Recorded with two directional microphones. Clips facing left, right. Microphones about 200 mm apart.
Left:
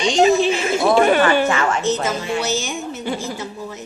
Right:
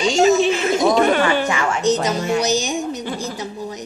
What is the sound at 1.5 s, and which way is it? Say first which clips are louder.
A woman's voice: right 1 dB; 15° right (ahead or behind).